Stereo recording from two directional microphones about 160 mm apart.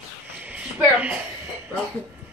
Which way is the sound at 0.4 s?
10° right (ahead or behind).